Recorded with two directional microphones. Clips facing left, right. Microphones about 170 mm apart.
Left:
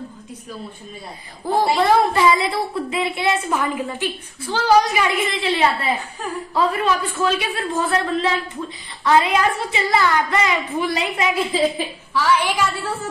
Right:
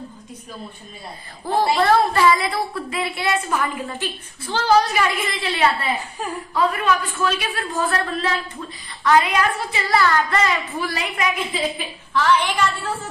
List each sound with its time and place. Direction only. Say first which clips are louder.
1.4 s a woman's voice: left 1 dB; 10° left (ahead or behind)
6.5 s a woman's voice: left 1 dB; 30° left (ahead or behind)
12.1 s a woman's voice: right 1 dB; 10° left (ahead or behind)